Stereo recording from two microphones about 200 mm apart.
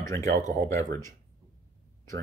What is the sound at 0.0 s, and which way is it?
Speech, 15° left (ahead or behind).